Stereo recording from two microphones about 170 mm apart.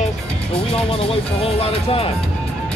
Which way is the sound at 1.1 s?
35° left (ahead or behind).